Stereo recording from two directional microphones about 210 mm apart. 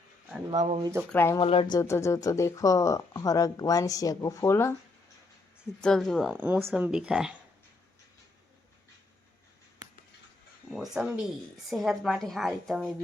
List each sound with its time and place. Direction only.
0.8 s speech: 15° right (ahead or behind)
1.1 s speech: 10° left (ahead or behind)
1.4 s speech: 25° left (ahead or behind)
5.8 s speech: centre (ahead or behind)
10.7 s speech: 5° right (ahead or behind)